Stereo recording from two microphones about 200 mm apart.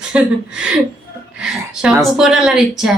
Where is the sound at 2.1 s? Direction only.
Centre (ahead or behind).